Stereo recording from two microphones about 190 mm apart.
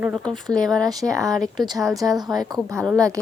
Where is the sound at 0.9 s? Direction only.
20° right (ahead or behind).